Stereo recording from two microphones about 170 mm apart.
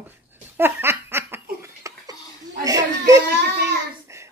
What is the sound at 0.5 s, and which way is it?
Laughter, 15° right (ahead or behind).